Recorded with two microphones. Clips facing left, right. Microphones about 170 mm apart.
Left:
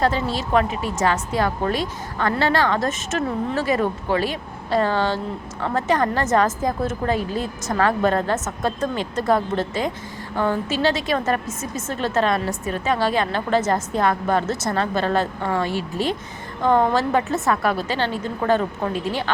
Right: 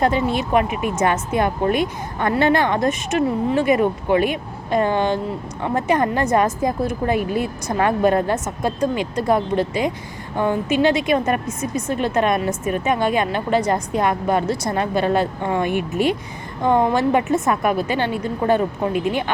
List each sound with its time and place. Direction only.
0.3 s a woman's voice: 15° right (ahead or behind)